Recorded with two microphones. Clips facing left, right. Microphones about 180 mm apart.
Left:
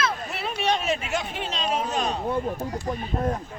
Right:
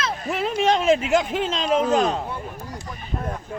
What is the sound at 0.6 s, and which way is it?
Speech, 90° right.